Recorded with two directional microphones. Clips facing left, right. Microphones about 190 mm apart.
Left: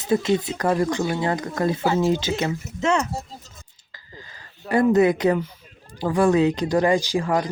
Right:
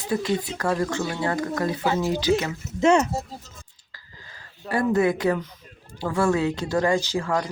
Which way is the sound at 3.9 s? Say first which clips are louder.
Left 5 dB; 20° left (ahead or behind).